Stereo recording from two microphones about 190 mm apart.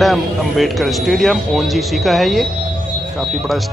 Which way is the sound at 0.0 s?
Centre (ahead or behind).